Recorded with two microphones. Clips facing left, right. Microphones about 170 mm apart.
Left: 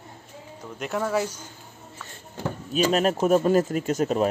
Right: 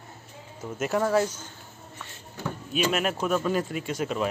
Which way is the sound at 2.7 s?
35° left (ahead or behind).